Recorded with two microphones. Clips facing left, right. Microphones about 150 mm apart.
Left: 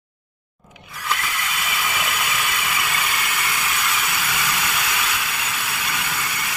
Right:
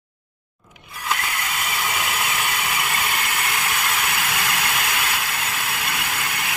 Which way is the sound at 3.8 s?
60° right (ahead or behind).